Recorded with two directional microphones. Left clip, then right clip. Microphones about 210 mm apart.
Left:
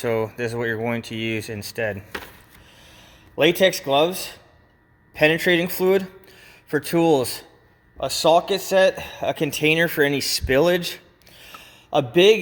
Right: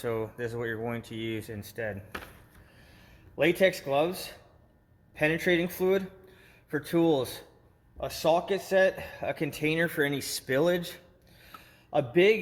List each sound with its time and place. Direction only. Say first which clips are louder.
0.0 s speech: left 9 dB; 30° left (ahead or behind)
3.6 s speech: left 7 dB; 50° left (ahead or behind)